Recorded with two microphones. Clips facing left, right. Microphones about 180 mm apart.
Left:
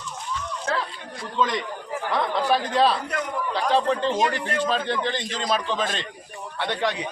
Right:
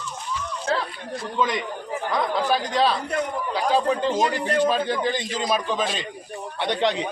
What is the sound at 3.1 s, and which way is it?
Speech, 25° right (ahead or behind).